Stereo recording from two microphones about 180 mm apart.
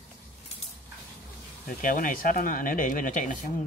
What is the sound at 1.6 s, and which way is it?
Speech, 50° left (ahead or behind).